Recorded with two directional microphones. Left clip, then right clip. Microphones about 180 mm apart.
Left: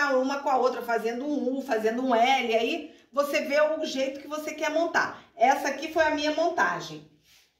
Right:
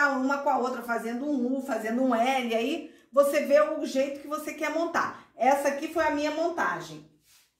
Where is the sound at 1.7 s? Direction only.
50° right (ahead or behind).